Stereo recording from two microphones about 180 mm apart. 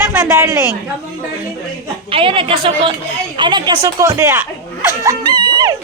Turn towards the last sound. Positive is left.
turn(degrees=-25)  # may be behind; listen again after turning